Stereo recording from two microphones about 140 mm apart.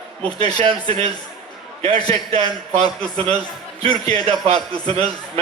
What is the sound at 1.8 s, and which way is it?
A man's voice, 45° right (ahead or behind).